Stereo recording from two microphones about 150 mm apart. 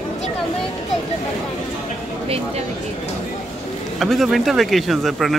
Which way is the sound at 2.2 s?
40° right (ahead or behind).